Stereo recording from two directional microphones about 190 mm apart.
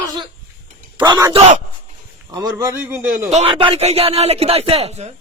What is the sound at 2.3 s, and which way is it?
A man's voice, 20° right (ahead or behind).